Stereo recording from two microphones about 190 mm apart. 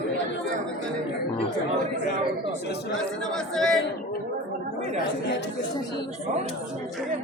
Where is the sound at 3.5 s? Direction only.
Centre (ahead or behind).